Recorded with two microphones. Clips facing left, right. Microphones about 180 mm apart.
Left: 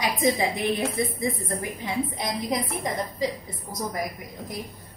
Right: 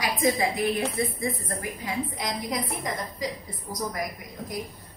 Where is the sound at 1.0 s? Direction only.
20° left (ahead or behind).